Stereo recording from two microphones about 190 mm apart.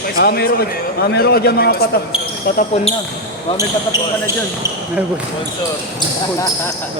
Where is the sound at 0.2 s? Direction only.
55° left (ahead or behind).